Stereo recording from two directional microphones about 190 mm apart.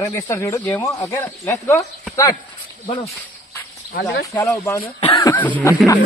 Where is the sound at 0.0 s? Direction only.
15° left (ahead or behind).